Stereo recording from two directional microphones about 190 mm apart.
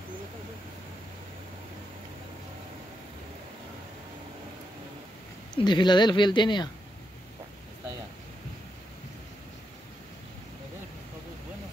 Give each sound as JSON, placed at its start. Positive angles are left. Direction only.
{"t": 5.5, "sound": "speech", "side_deg": 25}